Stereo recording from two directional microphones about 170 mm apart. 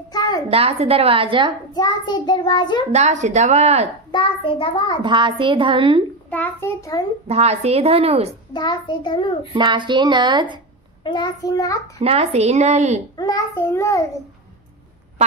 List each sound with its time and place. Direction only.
0.1 s a sound: 25° left (ahead or behind)
0.5 s a woman's voice: 35° right (ahead or behind)
1.7 s child singing: 25° left (ahead or behind)
2.9 s a woman's voice: 45° right (ahead or behind)
4.1 s child singing: 30° left (ahead or behind)
5.0 s speech: 30° right (ahead or behind)
6.3 s a child's voice: 10° left (ahead or behind)
7.2 s a woman's voice: 40° right (ahead or behind)
8.5 s child singing: 25° left (ahead or behind)
9.5 s speech: 25° right (ahead or behind)
11.1 s child singing: 25° left (ahead or behind)
12.0 s a woman's voice: 40° right (ahead or behind)
13.1 s child singing: 20° left (ahead or behind)